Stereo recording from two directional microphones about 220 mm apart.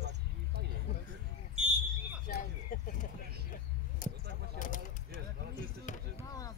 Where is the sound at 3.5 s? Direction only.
35° left (ahead or behind).